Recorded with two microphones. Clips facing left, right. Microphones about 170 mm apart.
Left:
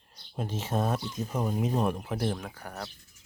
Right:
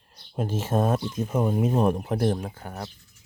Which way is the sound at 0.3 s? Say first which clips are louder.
Right 6 dB; 50° right (ahead or behind).